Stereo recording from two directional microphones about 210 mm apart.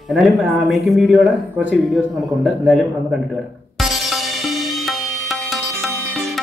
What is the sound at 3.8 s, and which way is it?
Music, centre (ahead or behind).